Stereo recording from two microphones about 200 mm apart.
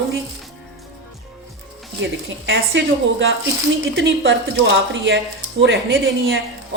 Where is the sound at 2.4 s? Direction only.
65° right (ahead or behind).